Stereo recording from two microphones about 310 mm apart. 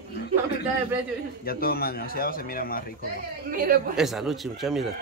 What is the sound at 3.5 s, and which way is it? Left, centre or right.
Speech, right.